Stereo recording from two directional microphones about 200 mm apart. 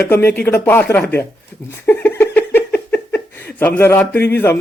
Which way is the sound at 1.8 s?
10° left (ahead or behind).